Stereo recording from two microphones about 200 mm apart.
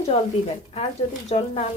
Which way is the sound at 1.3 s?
35° left (ahead or behind).